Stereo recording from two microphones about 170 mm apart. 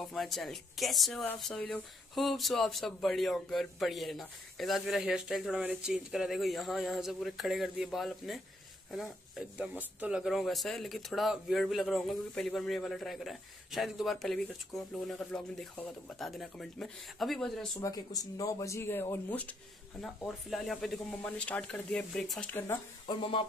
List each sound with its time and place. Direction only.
0.0 s speech: centre (ahead or behind)
17.7 s speech: 20° left (ahead or behind)